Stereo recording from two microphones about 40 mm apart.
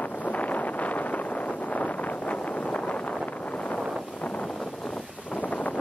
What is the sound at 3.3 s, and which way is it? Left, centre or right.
Vehicle, left.